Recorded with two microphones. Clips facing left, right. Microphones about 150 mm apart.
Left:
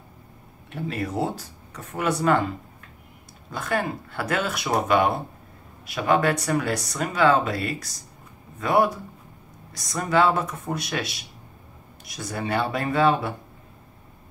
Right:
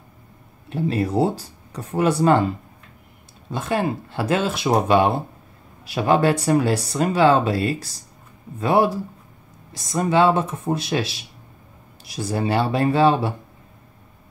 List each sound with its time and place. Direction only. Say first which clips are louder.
0.7 s speech: right 7 dB; 30° right (ahead or behind)
3.5 s speech: right 4 dB; 25° right (ahead or behind)